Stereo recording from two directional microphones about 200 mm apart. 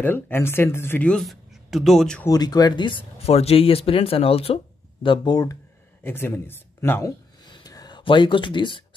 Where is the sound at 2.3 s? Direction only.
20° left (ahead or behind).